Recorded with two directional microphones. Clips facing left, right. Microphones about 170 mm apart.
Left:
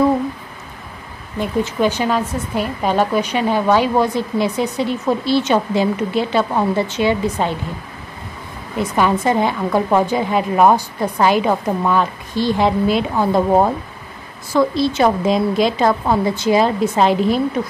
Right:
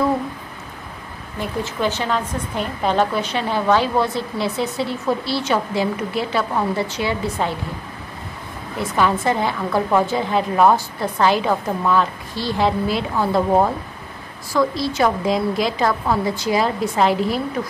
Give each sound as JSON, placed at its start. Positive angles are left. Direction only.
{"t": 1.4, "sound": "a woman's voice", "side_deg": 15}
{"t": 8.7, "sound": "a woman's voice", "side_deg": 15}